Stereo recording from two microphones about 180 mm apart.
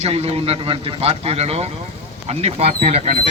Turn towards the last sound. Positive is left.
turn(degrees=-35)  # may be behind; listen again after turning